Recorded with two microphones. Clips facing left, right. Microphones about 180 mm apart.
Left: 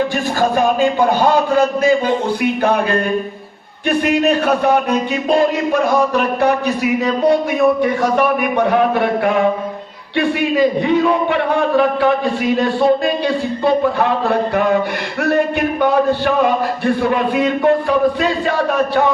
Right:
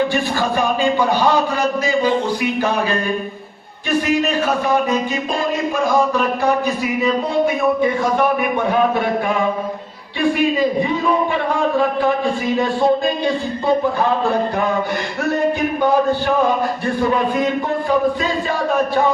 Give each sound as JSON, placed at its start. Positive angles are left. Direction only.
{"t": 0.8, "sound": "a man's voice", "side_deg": 50}
{"t": 3.8, "sound": "speech", "side_deg": 60}
{"t": 6.4, "sound": "a man's voice", "side_deg": 70}
{"t": 8.7, "sound": "a man's voice", "side_deg": 70}
{"t": 14.0, "sound": "a man's voice", "side_deg": 65}
{"t": 17.3, "sound": "a man's voice", "side_deg": 65}